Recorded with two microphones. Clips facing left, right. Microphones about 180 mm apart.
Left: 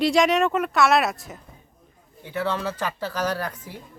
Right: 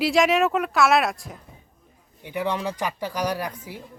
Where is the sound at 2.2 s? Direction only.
15° right (ahead or behind).